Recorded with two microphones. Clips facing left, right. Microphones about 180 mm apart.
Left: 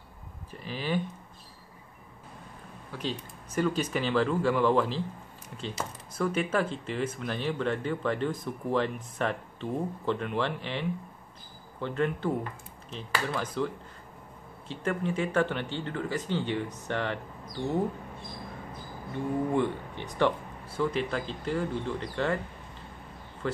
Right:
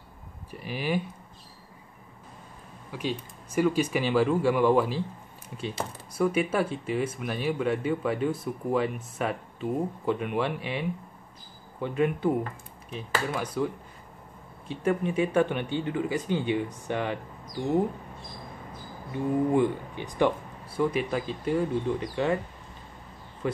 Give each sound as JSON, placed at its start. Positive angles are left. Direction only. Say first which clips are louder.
{"t": 0.5, "sound": "speech", "louder": "right 2 dB", "side_deg": -10}
{"t": 2.9, "sound": "speech", "louder": "right 3 dB", "side_deg": -10}
{"t": 6.1, "sound": "speech", "louder": "right 3 dB", "side_deg": -10}
{"t": 14.7, "sound": "speech", "louder": "right 4 dB", "side_deg": -15}
{"t": 19.1, "sound": "speech", "louder": "right 4 dB", "side_deg": -15}
{"t": 23.4, "sound": "speech", "louder": "right 2 dB", "side_deg": -15}